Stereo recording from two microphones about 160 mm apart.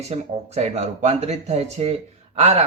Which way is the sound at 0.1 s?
40° right (ahead or behind).